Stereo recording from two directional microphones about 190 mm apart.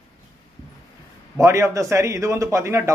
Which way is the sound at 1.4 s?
15° right (ahead or behind).